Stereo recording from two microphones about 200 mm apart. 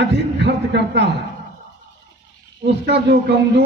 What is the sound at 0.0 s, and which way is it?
A man's voice, 60° right (ahead or behind).